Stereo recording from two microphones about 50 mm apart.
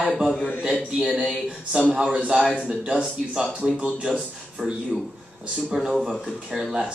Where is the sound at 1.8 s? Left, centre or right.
Right.